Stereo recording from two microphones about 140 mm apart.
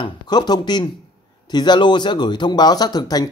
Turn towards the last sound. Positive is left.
turn(degrees=30)  # may be behind; listen again after turning